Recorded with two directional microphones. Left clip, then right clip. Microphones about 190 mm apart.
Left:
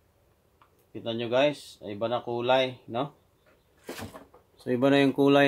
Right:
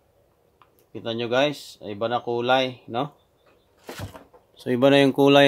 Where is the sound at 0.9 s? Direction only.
55° right (ahead or behind).